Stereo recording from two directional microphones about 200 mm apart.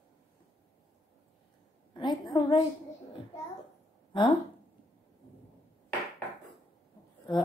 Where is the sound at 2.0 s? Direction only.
20° left (ahead or behind).